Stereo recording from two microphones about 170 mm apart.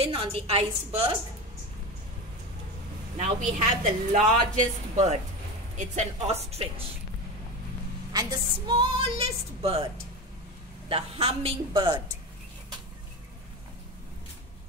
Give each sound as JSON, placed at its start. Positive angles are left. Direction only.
{"t": 0.0, "sound": "a woman's voice", "side_deg": -35}
{"t": 3.2, "sound": "a woman's voice", "side_deg": -50}
{"t": 8.1, "sound": "a woman's voice", "side_deg": -25}